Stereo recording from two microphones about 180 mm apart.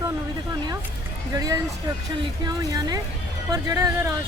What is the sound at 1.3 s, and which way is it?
A man's voice, 20° right (ahead or behind).